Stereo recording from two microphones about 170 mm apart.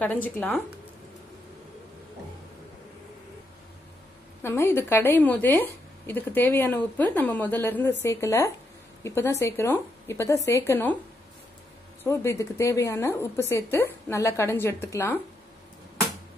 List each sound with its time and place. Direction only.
0.0 s a woman's voice: 10° left (ahead or behind)
4.4 s a woman's voice: 15° left (ahead or behind)
12.0 s a woman's voice: 15° left (ahead or behind)